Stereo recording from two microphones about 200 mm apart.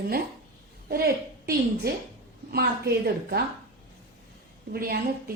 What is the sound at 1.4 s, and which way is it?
A woman's voice, 50° right (ahead or behind).